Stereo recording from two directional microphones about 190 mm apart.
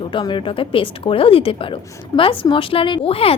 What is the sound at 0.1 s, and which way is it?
A woman's voice, 25° left (ahead or behind).